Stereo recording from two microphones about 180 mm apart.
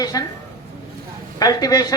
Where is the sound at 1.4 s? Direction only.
20° left (ahead or behind).